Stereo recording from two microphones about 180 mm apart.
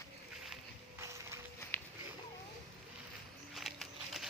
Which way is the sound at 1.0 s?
15° right (ahead or behind).